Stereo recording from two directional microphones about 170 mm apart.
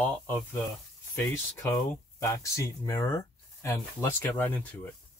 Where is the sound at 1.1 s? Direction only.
15° left (ahead or behind).